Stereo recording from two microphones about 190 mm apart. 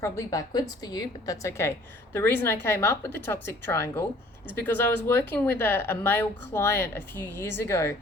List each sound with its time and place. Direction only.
0.0 s speech: 15° left (ahead or behind)